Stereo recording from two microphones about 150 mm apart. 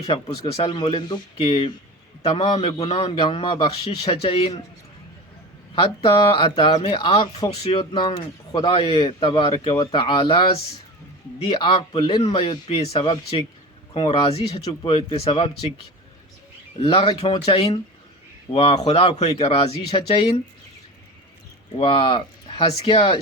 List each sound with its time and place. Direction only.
0.0 s speech: 40° left (ahead or behind)
0.5 s speech: 30° left (ahead or behind)
5.7 s speech: 35° left (ahead or behind)
7.5 s speech: 45° left (ahead or behind)
11.4 s speech: 35° left (ahead or behind)
16.8 s speech: 35° left (ahead or behind)
21.8 s speech: 35° left (ahead or behind)